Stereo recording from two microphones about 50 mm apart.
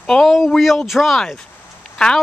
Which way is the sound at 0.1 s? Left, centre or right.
Centre.